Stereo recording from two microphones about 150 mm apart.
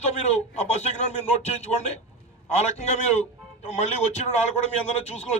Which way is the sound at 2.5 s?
45° left (ahead or behind).